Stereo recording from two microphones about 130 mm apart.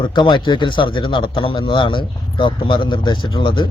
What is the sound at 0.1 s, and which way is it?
A man's voice, 35° left (ahead or behind).